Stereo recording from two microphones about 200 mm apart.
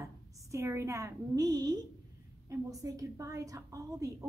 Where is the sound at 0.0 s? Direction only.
15° right (ahead or behind).